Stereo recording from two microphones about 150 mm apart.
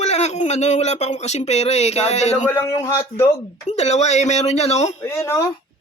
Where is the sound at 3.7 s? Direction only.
50° left (ahead or behind).